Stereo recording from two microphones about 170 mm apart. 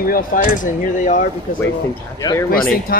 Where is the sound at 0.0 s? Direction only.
55° left (ahead or behind).